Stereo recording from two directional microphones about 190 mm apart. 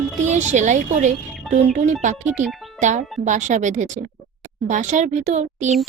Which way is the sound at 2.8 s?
40° right (ahead or behind).